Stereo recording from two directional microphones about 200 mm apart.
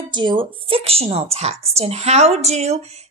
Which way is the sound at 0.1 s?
25° right (ahead or behind).